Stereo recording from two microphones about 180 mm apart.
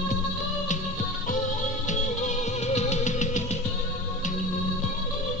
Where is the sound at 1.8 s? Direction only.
40° left (ahead or behind).